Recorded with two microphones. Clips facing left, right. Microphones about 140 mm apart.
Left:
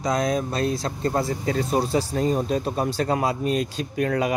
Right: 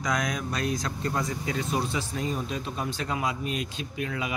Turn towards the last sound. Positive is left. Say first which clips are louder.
# left 9 dB
turn(degrees=45)  # may be behind; listen again after turning